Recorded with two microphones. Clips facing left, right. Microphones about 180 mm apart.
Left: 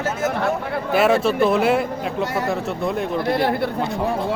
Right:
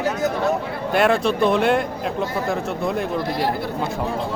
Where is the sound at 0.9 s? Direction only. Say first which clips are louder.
Left 1 dB; centre (ahead or behind).